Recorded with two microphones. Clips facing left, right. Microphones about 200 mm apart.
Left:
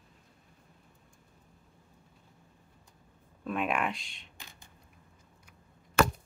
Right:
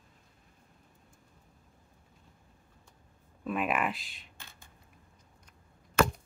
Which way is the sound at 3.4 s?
5° right (ahead or behind).